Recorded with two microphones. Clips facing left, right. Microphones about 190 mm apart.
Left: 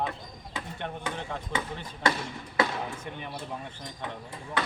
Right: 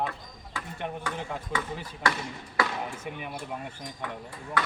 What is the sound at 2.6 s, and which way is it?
Chop, 25° left (ahead or behind).